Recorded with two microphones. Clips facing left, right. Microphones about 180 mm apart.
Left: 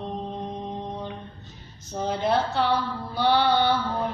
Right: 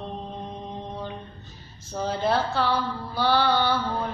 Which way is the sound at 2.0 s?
20° left (ahead or behind).